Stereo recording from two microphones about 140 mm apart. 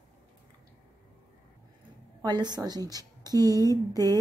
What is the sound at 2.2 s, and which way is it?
A woman's voice, 30° right (ahead or behind).